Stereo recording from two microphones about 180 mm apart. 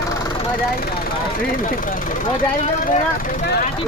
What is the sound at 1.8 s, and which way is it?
Speech, 50° left (ahead or behind).